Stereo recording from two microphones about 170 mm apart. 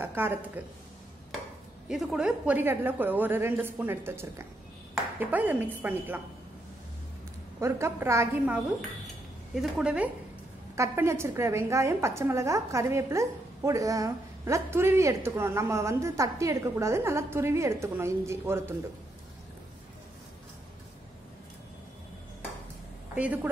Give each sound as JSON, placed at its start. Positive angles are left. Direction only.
{"t": 0.0, "sound": "a woman's voice", "side_deg": -10}
{"t": 1.9, "sound": "a woman's voice", "side_deg": 0}
{"t": 7.6, "sound": "a woman's voice", "side_deg": -15}
{"t": 9.6, "sound": "a woman's voice", "side_deg": -5}
{"t": 23.1, "sound": "a woman's voice", "side_deg": -10}